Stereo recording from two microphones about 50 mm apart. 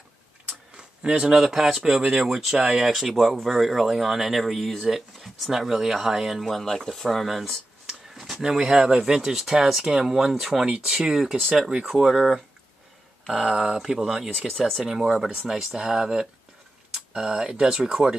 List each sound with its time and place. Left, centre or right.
0.5 s a sound: centre
1.3 s speech: centre
6.6 s speech: centre
16.9 s tick-tock: centre
17.3 s speech: centre